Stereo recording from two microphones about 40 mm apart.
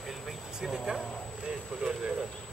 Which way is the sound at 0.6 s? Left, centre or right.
Centre.